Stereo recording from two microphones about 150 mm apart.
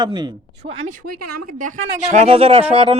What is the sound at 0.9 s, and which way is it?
Speech, 75° right (ahead or behind).